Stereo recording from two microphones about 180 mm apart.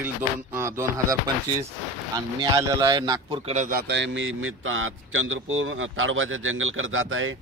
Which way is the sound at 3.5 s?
45° right (ahead or behind).